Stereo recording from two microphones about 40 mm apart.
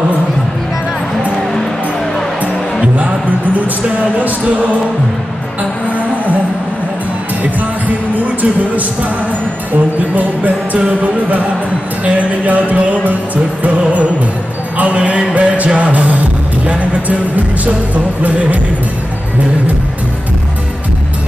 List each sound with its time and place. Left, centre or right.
2.8 s speech: right
5.6 s music: right
8.1 s music: right